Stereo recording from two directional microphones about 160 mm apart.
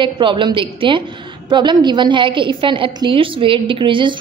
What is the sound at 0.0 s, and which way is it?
A woman's voice, 30° right (ahead or behind).